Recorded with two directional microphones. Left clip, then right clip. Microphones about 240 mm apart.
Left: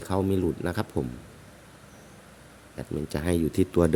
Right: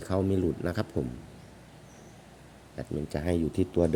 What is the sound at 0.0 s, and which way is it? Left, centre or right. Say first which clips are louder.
Speech: left 2 dB; centre.